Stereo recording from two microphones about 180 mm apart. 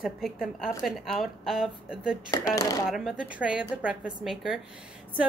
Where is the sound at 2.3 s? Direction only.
20° left (ahead or behind).